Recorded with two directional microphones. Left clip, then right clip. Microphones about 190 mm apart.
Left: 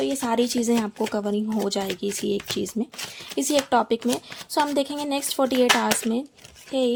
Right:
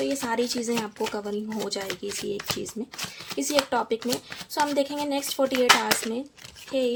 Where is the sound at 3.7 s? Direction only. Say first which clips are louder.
Left 5 dB; 40° left (ahead or behind).